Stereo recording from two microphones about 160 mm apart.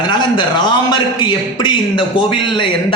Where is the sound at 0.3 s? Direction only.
30° left (ahead or behind).